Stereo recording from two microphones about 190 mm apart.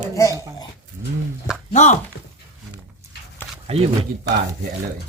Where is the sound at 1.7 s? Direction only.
40° left (ahead or behind).